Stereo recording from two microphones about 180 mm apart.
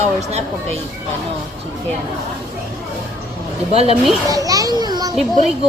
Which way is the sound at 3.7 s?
35° right (ahead or behind).